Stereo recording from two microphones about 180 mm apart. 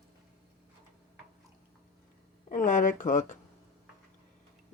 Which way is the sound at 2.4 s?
45° left (ahead or behind).